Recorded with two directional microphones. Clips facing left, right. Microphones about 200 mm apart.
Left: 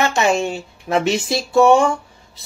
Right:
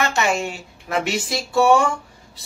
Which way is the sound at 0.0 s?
25° left (ahead or behind).